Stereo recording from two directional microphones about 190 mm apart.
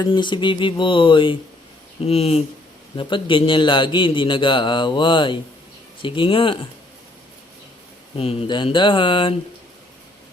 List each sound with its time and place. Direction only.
0.0 s speech: 25° left (ahead or behind)
8.1 s speech: 30° left (ahead or behind)